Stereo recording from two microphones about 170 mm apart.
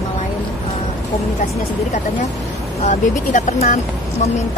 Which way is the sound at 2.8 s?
40° left (ahead or behind).